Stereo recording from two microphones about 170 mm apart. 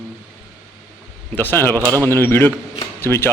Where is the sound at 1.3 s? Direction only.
10° left (ahead or behind).